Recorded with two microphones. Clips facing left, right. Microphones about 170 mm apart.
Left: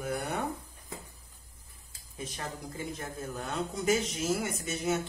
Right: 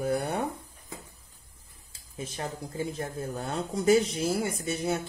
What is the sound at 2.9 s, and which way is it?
A man's voice, 30° right (ahead or behind).